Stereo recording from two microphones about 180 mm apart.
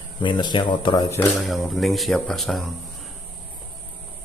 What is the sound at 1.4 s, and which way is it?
Speech, centre (ahead or behind).